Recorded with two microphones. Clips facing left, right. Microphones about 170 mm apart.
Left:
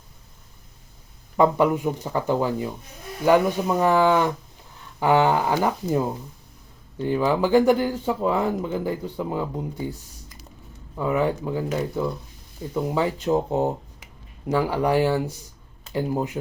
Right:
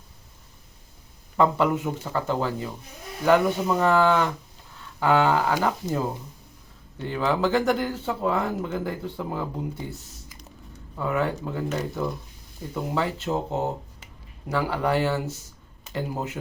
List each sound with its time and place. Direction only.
1.4 s speech: 15° left (ahead or behind)
7.1 s speech: 10° left (ahead or behind)
10.9 s speech: 15° left (ahead or behind)